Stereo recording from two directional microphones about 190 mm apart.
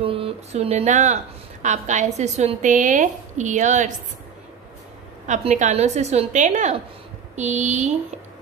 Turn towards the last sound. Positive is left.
turn(degrees=-40)  # may be behind; listen again after turning